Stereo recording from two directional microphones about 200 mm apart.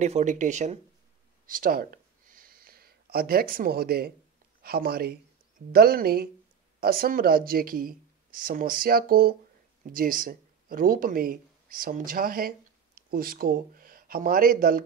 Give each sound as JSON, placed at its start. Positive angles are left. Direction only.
{"t": 0.0, "sound": "speech", "side_deg": -35}
{"t": 1.4, "sound": "a sound", "side_deg": -45}
{"t": 4.6, "sound": "speech", "side_deg": -50}